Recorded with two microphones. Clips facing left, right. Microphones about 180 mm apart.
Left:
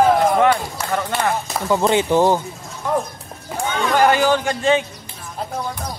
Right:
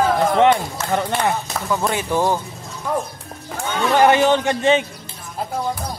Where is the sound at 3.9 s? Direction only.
20° right (ahead or behind).